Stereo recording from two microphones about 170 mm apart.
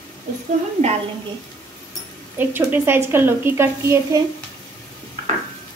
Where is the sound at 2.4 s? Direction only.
10° right (ahead or behind).